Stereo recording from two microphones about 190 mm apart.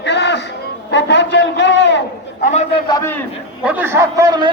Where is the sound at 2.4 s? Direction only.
35° left (ahead or behind).